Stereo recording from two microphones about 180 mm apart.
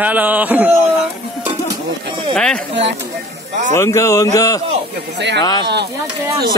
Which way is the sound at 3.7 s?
15° left (ahead or behind).